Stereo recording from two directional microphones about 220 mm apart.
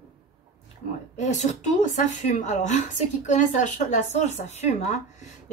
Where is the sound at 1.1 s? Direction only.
30° left (ahead or behind).